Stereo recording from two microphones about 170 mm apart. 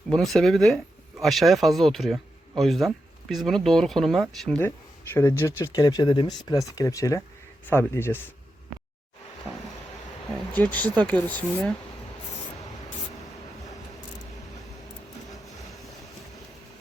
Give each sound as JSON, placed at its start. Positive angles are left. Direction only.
{"t": 0.1, "sound": "speech", "side_deg": 0}
{"t": 10.5, "sound": "speech", "side_deg": 10}